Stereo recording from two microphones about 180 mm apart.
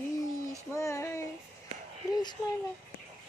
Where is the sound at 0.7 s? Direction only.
15° left (ahead or behind).